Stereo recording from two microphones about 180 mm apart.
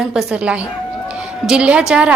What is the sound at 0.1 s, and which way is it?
A woman's voice, 5° right (ahead or behind).